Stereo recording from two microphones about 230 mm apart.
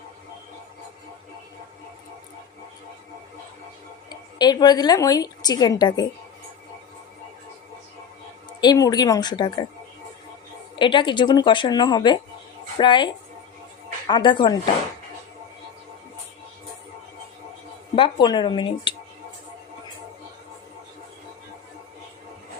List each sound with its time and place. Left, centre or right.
4.1 s a woman's voice: centre
8.4 s a woman's voice: centre
10.8 s a woman's voice: left
17.9 s a woman's voice: left